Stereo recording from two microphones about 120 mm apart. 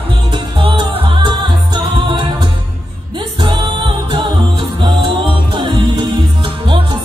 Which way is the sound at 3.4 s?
45° right (ahead or behind).